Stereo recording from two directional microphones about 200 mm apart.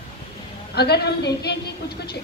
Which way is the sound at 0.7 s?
55° left (ahead or behind).